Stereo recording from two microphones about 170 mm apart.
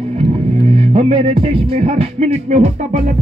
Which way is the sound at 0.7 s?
35° right (ahead or behind).